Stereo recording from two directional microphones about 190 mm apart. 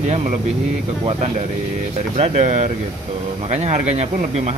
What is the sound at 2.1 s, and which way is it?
Speech, 35° right (ahead or behind).